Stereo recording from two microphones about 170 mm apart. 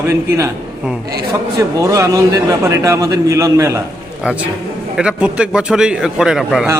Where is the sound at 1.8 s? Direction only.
20° right (ahead or behind).